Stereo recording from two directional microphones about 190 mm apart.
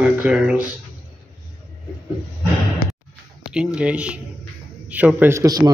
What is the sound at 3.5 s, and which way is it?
Speech, 5° right (ahead or behind).